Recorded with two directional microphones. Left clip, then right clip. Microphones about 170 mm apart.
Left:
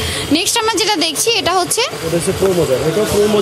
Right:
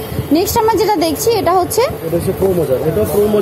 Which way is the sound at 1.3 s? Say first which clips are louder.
Right 3 dB; 20° left (ahead or behind).